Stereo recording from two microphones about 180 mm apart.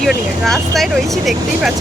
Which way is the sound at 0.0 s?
Centre (ahead or behind).